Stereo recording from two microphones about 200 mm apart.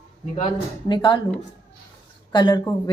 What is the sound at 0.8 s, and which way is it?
Speech, 25° left (ahead or behind).